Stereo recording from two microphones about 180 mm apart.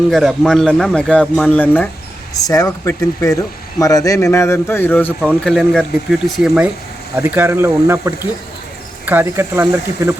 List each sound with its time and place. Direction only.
0.1 s speech: centre (ahead or behind)
2.3 s speech: 20° left (ahead or behind); by 10.2 s 15° right (ahead or behind)